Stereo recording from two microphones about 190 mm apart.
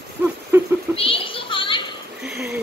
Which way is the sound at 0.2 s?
10° right (ahead or behind).